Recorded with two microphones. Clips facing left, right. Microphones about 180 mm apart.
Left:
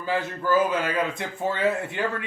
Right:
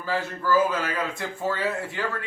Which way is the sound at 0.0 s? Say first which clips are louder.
Left 1 dB; 20° left (ahead or behind).